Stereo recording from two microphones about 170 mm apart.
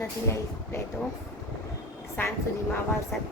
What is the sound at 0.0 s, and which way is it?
Speech, 15° left (ahead or behind).